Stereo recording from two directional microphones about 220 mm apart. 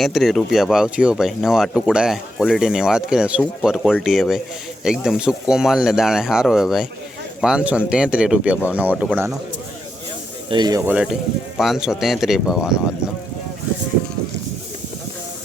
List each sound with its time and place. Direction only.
0.0 s speech: centre (ahead or behind)
10.5 s speech: 20° right (ahead or behind)
10.9 s speech: centre (ahead or behind)